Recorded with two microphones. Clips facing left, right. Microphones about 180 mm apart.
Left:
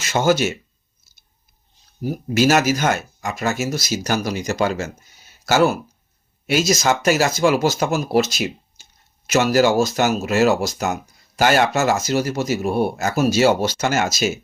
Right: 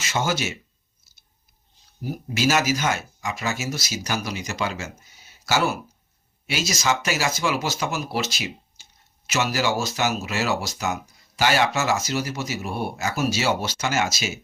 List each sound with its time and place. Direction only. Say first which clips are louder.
0.0 s speech: left 8 dB; 45° left (ahead or behind)
2.3 s speech: left 5 dB; 50° left (ahead or behind)